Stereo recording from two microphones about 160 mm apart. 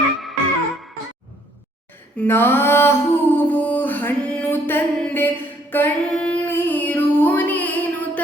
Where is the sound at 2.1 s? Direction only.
15° left (ahead or behind).